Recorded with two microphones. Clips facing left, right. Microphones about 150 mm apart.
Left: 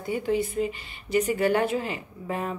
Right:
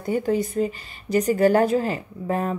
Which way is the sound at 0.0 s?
45° right (ahead or behind).